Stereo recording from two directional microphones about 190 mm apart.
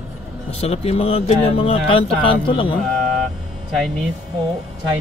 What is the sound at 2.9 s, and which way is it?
Vehicle, 5° left (ahead or behind).